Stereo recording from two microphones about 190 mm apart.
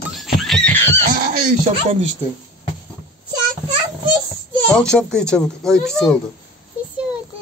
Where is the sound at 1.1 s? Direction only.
50° right (ahead or behind).